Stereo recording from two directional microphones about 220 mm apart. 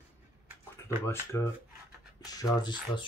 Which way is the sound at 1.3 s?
10° left (ahead or behind).